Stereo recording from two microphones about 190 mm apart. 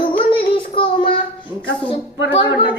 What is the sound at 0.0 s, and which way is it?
Child singing, 25° left (ahead or behind).